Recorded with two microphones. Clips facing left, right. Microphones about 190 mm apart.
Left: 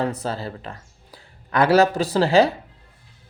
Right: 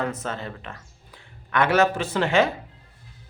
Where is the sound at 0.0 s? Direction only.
35° left (ahead or behind).